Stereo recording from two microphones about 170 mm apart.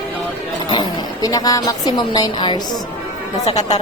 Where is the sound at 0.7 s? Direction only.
25° left (ahead or behind).